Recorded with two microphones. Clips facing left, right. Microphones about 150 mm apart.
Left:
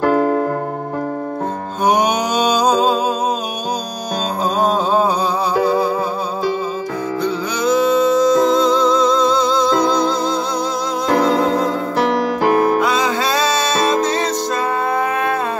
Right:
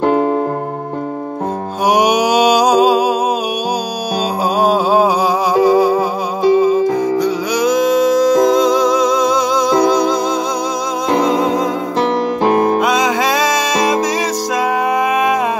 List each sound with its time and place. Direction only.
0.0 s keyboard: 25° right (ahead or behind)
1.9 s mantra: 10° right (ahead or behind)
4.6 s music: 10° right (ahead or behind)